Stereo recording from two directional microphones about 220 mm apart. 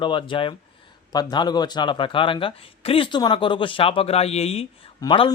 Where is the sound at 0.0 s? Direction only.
20° left (ahead or behind).